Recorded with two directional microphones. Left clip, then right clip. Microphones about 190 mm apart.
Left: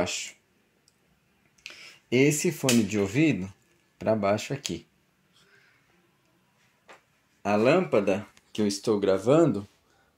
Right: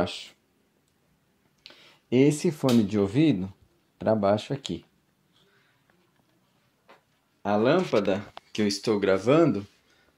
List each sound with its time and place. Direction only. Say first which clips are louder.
0.0 s speech: even; 15° right (ahead or behind)
1.6 s speech: left 6 dB; 10° right (ahead or behind)
7.4 s speech: left 1 dB; centre (ahead or behind)